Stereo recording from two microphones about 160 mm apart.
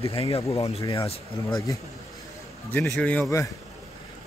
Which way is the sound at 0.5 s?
40° left (ahead or behind).